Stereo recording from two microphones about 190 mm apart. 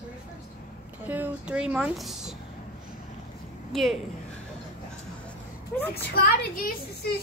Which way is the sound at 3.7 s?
Centre (ahead or behind).